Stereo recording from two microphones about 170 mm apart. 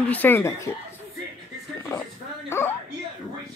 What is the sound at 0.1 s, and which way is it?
Speech, 10° left (ahead or behind).